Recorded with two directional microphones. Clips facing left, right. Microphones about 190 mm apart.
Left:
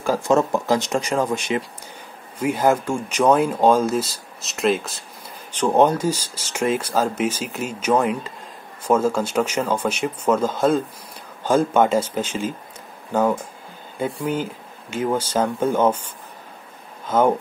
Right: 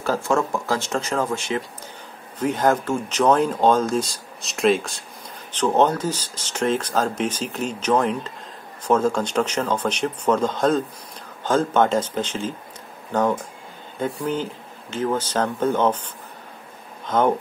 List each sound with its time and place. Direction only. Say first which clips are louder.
0.0 s speech: left 3 dB; 15° left (ahead or behind)
17.0 s speech: left 2 dB; 10° left (ahead or behind)